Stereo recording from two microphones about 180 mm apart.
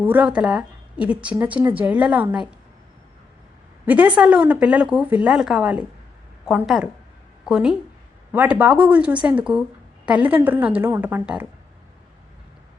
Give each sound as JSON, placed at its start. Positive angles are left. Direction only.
{"t": 0.0, "sound": "a woman's voice", "side_deg": -10}
{"t": 3.8, "sound": "a woman's voice", "side_deg": -10}